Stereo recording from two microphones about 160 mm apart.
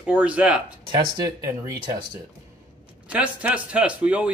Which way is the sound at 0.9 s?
20° right (ahead or behind).